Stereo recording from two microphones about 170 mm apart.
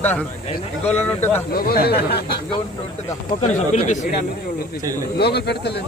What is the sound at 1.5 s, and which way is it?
Speech, 60° left (ahead or behind).